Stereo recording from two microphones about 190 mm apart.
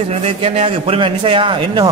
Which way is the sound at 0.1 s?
35° right (ahead or behind).